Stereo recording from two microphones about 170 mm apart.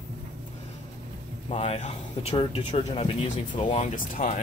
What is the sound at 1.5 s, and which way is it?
Speech, 40° left (ahead or behind).